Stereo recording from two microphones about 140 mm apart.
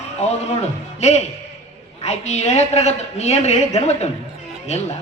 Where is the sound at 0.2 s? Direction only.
50° left (ahead or behind).